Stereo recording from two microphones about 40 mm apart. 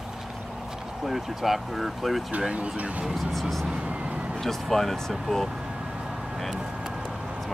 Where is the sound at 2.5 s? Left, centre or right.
Right.